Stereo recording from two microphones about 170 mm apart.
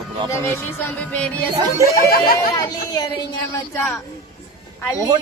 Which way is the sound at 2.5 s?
25° left (ahead or behind).